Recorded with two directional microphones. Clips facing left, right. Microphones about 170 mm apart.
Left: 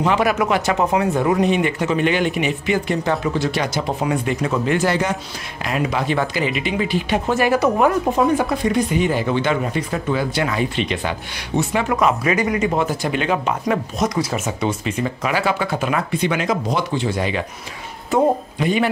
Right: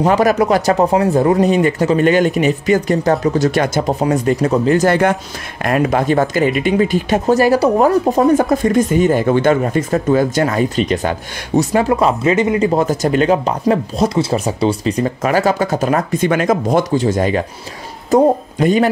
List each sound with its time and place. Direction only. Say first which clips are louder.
0.0 s speech: right 5 dB; 40° right (ahead or behind)
5.6 s speech: right 7 dB; 55° right (ahead or behind)